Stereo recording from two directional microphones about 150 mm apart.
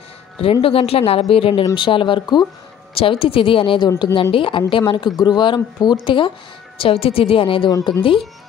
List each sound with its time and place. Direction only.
0.4 s speech: 35° left (ahead or behind)
7.7 s speech: 25° left (ahead or behind)